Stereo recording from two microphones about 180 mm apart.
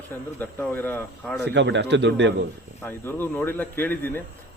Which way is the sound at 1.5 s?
75° right (ahead or behind).